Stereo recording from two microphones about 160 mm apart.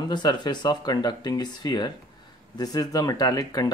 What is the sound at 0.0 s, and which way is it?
Speech, 25° left (ahead or behind).